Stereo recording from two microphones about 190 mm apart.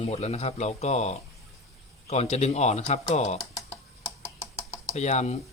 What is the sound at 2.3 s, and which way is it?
Speech, 35° left (ahead or behind).